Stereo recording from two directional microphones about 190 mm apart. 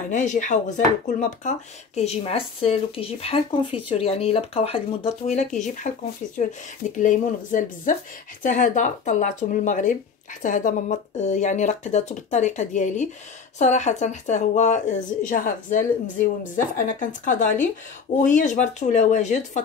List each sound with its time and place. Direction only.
0.1 s speech: 40° left (ahead or behind)